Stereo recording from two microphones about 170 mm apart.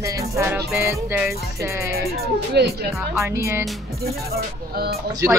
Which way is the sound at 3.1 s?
15° right (ahead or behind).